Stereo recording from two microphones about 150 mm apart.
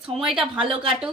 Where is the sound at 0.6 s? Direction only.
35° right (ahead or behind).